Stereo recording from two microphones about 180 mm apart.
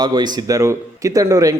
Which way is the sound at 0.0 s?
25° right (ahead or behind).